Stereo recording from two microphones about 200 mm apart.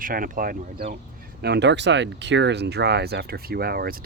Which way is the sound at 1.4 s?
55° right (ahead or behind).